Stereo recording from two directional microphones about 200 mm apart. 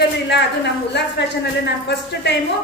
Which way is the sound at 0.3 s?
60° left (ahead or behind).